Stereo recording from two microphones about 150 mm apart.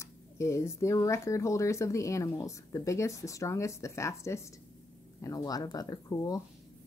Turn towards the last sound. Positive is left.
turn(degrees=25)  # may be behind; listen again after turning